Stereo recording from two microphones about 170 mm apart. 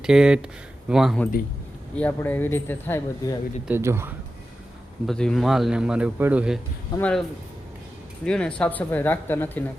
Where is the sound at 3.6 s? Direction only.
15° right (ahead or behind).